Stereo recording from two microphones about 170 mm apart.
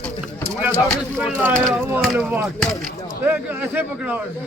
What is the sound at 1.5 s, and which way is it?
Speech, 5° left (ahead or behind).